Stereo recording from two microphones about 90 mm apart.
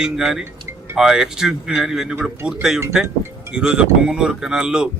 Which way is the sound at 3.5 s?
10° right (ahead or behind).